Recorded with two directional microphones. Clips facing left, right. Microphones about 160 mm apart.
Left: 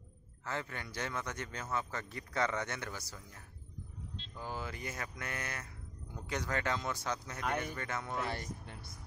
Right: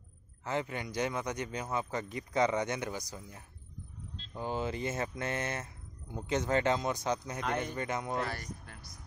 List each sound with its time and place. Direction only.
0.4 s a man's voice: 15° right (ahead or behind)
4.4 s mantra: 20° right (ahead or behind)
7.4 s speech: 5° left (ahead or behind)
7.7 s mantra: 20° right (ahead or behind)
8.3 s speech: 25° left (ahead or behind)